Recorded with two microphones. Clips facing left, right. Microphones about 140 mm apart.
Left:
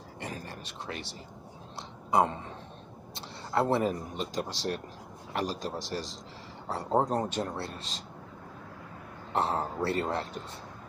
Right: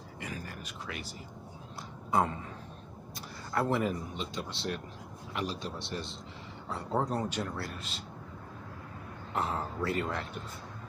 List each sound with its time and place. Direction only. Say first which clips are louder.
0.2 s a sound: left 2 dB; 30° left (ahead or behind)
2.0 s speech: left 3 dB; 20° left (ahead or behind)
3.2 s speech: left 4 dB; 30° left (ahead or behind)
7.2 s speech: left 2 dB; 30° left (ahead or behind)
9.3 s speech: left 4 dB; 35° left (ahead or behind)